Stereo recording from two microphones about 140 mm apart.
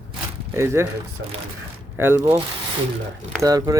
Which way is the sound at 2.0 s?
15° right (ahead or behind).